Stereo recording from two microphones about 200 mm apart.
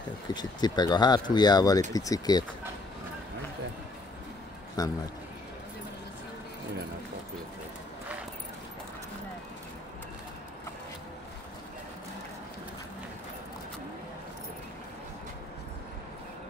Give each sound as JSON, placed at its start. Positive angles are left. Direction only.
{"t": 0.3, "sound": "speech", "side_deg": 20}
{"t": 4.8, "sound": "speech", "side_deg": 20}